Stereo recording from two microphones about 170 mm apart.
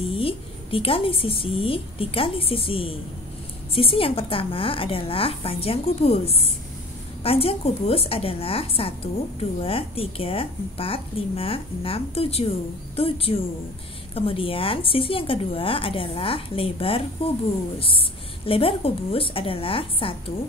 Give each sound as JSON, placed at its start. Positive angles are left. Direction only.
{"t": 0.1, "sound": "a woman's voice", "side_deg": 30}